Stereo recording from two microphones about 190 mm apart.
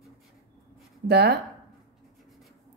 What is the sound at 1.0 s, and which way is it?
Speech, 60° right (ahead or behind).